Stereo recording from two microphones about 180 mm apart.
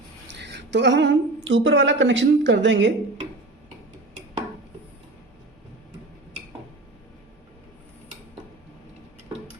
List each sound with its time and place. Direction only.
0.3 s a woman's voice: 75° right (ahead or behind); by 2.9 s 90° right